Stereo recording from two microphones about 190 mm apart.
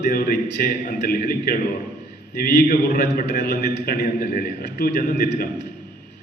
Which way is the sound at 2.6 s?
50° left (ahead or behind).